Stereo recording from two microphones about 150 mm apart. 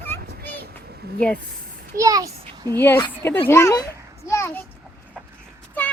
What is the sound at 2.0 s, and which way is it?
Speech, 25° right (ahead or behind).